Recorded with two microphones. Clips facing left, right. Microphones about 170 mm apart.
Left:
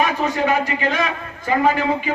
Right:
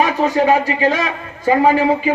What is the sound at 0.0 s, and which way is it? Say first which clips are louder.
Speech: right 4 dB; 30° right (ahead or behind).